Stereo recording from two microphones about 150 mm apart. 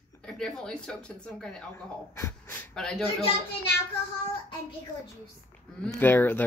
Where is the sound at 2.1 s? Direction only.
15° left (ahead or behind).